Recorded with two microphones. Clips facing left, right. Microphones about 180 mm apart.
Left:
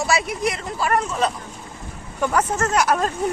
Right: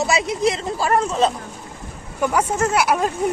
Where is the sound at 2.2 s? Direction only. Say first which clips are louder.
Right 1 dB; 10° right (ahead or behind).